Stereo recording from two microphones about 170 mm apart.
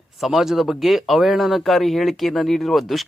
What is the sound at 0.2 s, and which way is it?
Speech, centre (ahead or behind).